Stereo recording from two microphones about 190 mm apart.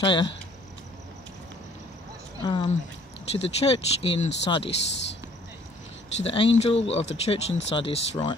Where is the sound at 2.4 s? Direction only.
25° left (ahead or behind).